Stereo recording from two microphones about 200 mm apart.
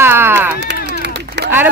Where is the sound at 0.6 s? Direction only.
60° right (ahead or behind).